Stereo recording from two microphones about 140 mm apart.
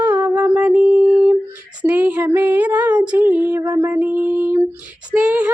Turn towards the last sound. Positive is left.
turn(degrees=-10)  # may be behind; listen again after turning